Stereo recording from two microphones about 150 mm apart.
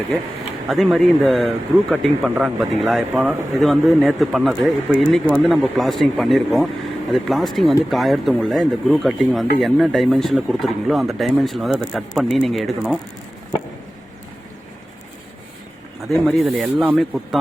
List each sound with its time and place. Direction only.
0.7 s speech: centre (ahead or behind)
16.2 s speech: centre (ahead or behind)